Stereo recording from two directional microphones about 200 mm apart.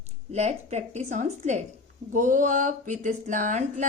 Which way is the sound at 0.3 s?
35° right (ahead or behind).